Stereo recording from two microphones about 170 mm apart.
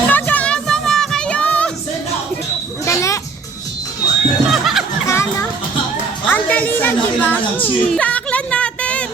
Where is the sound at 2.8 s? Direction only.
15° left (ahead or behind).